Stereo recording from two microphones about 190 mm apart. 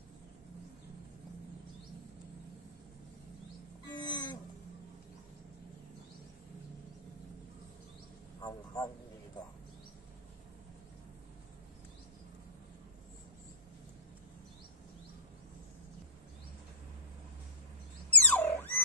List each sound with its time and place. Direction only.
3.8 s livestock: 20° left (ahead or behind)
8.4 s a man's voice: 20° left (ahead or behind)
18.1 s a sound: 10° left (ahead or behind)